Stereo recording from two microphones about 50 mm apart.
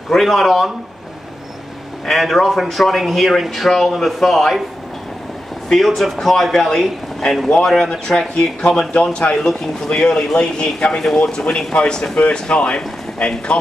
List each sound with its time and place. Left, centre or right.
0.1 s a man's voice: centre
2.0 s a man's voice: centre
5.9 s a man's voice: centre
8.4 s speech: centre